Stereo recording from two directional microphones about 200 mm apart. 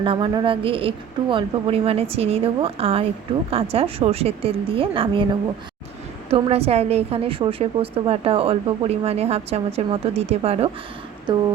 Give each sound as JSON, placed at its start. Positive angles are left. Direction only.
{"t": 0.0, "sound": "a woman's voice", "side_deg": -25}